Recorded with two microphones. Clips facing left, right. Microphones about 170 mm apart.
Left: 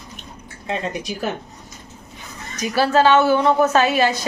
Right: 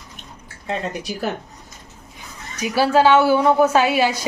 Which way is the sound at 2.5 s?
10° right (ahead or behind).